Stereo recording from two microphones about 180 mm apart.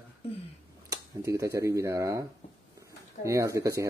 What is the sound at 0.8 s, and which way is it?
Speech, 15° right (ahead or behind).